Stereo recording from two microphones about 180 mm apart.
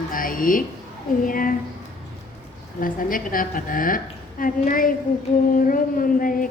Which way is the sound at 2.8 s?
50° left (ahead or behind).